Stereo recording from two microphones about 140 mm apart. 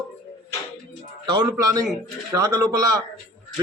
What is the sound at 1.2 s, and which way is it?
A man's voice, 30° right (ahead or behind).